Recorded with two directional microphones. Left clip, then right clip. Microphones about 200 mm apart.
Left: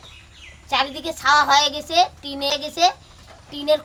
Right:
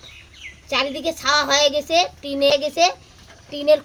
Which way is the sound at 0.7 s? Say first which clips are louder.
Even; 15° left (ahead or behind).